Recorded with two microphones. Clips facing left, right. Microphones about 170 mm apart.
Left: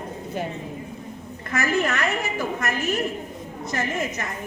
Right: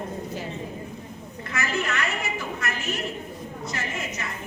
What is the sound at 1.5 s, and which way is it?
A woman's voice, 50° left (ahead or behind).